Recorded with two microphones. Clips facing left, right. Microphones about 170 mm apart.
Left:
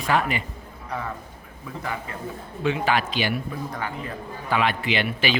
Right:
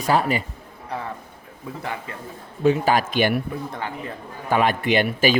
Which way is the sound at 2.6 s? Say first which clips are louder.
Right 5 dB; 40° right (ahead or behind).